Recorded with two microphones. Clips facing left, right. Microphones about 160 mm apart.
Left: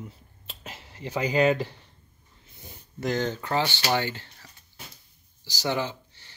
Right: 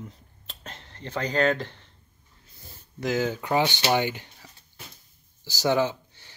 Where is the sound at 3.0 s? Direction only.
5° right (ahead or behind).